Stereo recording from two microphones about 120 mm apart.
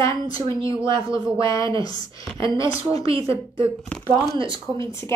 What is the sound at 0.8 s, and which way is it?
Speech, 45° right (ahead or behind).